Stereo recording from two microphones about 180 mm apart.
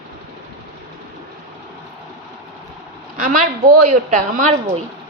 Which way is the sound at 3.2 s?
45° right (ahead or behind).